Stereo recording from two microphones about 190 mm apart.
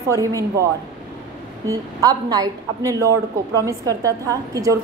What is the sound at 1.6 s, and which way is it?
A woman's voice, 20° right (ahead or behind).